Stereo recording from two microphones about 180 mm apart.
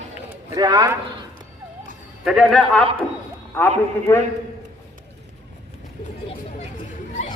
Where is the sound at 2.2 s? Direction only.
Centre (ahead or behind).